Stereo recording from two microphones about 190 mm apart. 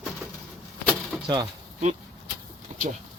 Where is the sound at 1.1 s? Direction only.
Centre (ahead or behind).